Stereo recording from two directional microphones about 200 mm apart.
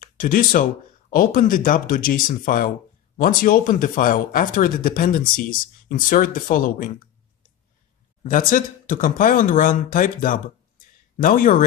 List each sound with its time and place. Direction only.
0.0 s speech: 45° left (ahead or behind)
8.2 s speech: 45° left (ahead or behind)